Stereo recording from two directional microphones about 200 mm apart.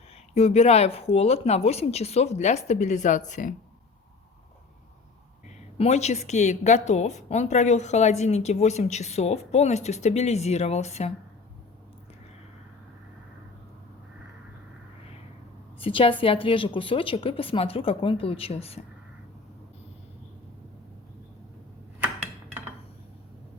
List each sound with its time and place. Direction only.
0.3 s a woman's voice: 30° left (ahead or behind)
5.7 s a woman's voice: 35° left (ahead or behind)
15.8 s a woman's voice: 25° left (ahead or behind)